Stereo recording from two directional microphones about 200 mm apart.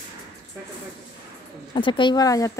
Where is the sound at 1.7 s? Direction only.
25° left (ahead or behind).